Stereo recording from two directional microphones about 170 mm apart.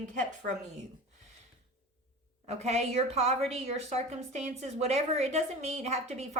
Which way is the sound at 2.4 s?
40° right (ahead or behind).